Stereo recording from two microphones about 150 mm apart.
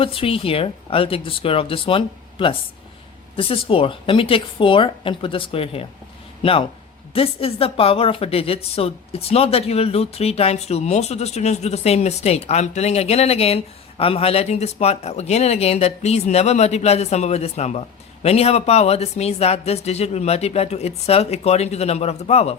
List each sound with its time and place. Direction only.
0.0 s a man's voice: 40° left (ahead or behind)